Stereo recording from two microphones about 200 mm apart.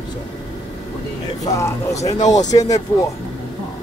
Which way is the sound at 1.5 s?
15° left (ahead or behind).